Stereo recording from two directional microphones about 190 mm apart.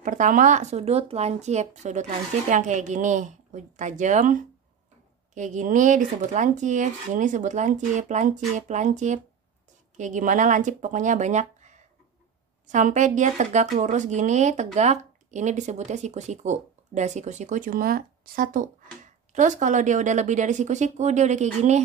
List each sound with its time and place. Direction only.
0.0 s speech: 45° right (ahead or behind)